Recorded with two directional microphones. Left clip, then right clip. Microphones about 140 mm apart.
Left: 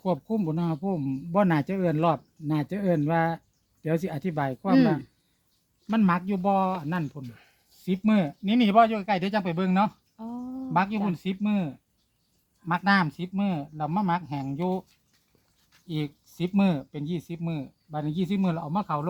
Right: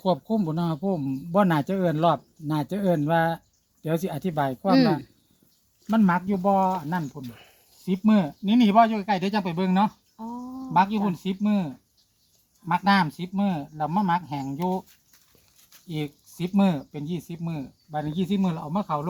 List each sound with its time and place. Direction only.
0.0 s speech: 5° right (ahead or behind)
15.9 s speech: 5° left (ahead or behind); by 19.0 s 20° left (ahead or behind)